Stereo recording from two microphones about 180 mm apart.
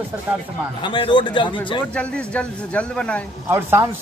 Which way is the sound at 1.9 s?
5° left (ahead or behind).